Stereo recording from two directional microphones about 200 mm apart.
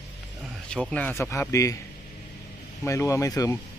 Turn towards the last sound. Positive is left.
turn(degrees=15)  # may be behind; listen again after turning